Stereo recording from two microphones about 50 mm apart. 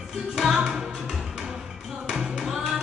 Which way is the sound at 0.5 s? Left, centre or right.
Centre.